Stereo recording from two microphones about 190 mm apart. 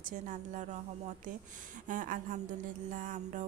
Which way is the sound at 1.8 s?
45° right (ahead or behind).